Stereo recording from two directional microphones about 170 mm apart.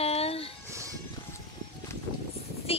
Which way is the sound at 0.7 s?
15° right (ahead or behind).